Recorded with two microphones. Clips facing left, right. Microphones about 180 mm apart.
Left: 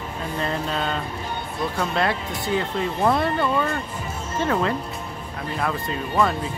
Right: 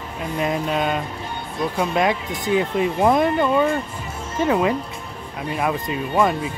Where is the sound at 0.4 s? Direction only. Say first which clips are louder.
Right 5 dB; 15° right (ahead or behind).